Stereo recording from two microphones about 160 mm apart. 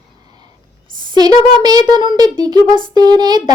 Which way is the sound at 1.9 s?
25° right (ahead or behind).